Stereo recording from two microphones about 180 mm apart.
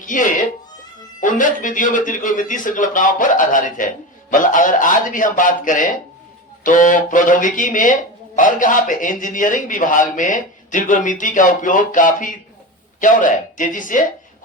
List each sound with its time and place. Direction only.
0.0 s a man's voice: 45° left (ahead or behind)